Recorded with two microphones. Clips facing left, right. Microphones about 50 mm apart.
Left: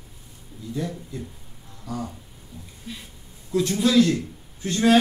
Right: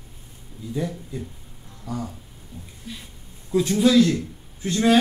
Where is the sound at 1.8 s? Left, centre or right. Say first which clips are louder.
Right 1 dB; centre.